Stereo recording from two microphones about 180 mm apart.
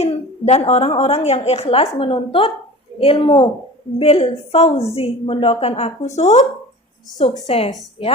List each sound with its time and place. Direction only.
0.0 s a woman's voice: 35° left (ahead or behind)